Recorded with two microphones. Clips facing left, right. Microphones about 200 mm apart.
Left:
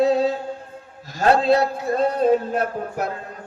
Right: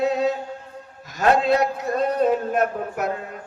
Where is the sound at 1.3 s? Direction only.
30° left (ahead or behind).